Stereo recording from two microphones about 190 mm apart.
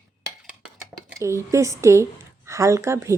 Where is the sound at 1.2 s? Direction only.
15° right (ahead or behind).